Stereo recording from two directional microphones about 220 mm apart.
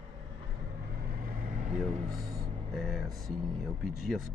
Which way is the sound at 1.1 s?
40° right (ahead or behind).